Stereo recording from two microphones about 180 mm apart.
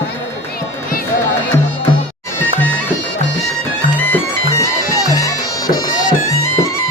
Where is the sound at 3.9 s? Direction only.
10° left (ahead or behind).